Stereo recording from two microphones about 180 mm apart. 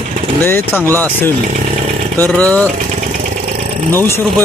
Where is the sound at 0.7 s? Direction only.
15° right (ahead or behind).